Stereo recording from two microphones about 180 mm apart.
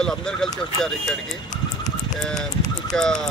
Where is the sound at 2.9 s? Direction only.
5° left (ahead or behind).